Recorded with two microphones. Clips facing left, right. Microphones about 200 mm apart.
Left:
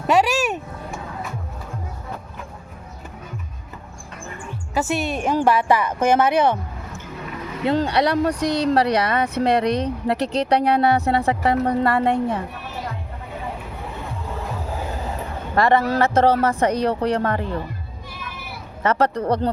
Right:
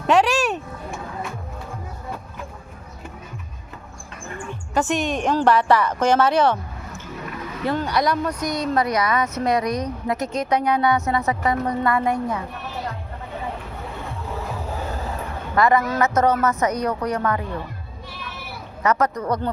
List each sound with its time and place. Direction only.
0.1 s a woman's voice: 10° left (ahead or behind)
4.7 s a woman's voice: 5° left (ahead or behind)
7.6 s speech: 25° left (ahead or behind)
15.5 s speech: 30° left (ahead or behind)
18.8 s speech: 30° left (ahead or behind)